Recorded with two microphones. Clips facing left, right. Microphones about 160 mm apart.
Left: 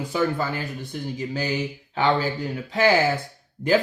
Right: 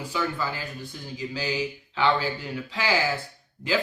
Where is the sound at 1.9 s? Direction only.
45° left (ahead or behind).